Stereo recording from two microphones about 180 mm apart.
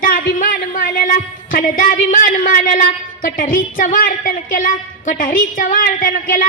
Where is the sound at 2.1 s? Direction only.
45° left (ahead or behind).